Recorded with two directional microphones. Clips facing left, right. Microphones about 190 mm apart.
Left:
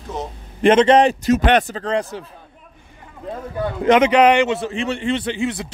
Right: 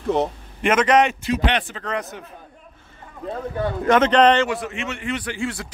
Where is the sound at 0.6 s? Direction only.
30° left (ahead or behind).